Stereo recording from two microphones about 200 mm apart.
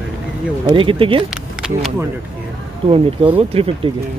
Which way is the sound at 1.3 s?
5° right (ahead or behind).